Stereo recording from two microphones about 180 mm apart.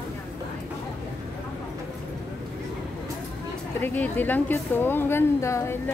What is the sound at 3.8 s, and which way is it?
Speech, 10° left (ahead or behind).